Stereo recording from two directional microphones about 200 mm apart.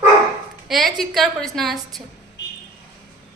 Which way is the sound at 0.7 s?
Centre (ahead or behind).